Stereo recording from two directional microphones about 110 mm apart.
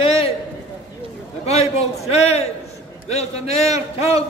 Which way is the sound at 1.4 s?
70° left (ahead or behind).